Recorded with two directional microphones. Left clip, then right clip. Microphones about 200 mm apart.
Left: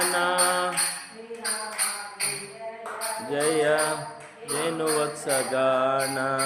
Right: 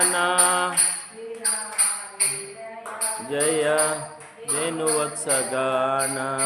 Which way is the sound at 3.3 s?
10° right (ahead or behind).